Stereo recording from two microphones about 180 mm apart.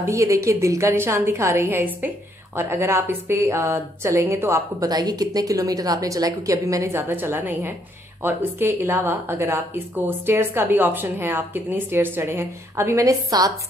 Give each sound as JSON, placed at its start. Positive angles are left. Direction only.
{"t": 0.1, "sound": "a woman's voice", "side_deg": -15}